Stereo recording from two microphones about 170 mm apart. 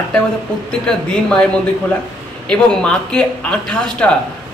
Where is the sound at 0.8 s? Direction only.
5° left (ahead or behind).